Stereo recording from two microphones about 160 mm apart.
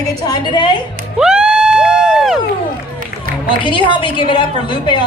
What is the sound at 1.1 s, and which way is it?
Crowd, 5° right (ahead or behind).